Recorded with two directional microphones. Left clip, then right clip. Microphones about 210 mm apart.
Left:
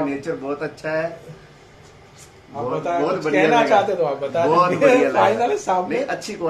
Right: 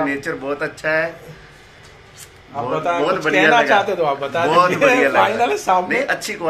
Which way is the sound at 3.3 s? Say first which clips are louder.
Right 2 dB; 20° right (ahead or behind).